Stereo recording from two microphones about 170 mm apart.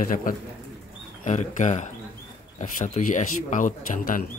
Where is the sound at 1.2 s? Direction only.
45° left (ahead or behind).